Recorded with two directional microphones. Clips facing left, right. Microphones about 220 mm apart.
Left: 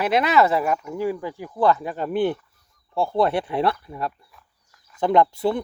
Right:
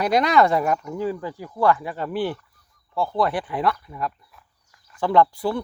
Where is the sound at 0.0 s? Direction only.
5° left (ahead or behind).